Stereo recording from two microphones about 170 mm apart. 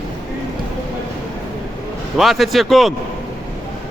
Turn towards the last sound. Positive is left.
turn(degrees=0)  # may be behind; listen again after turning